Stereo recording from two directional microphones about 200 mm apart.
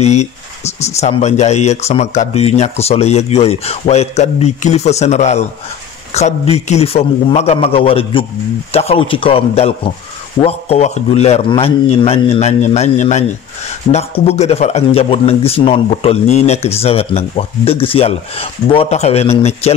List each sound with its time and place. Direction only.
0.0 s a man's voice: 35° left (ahead or behind)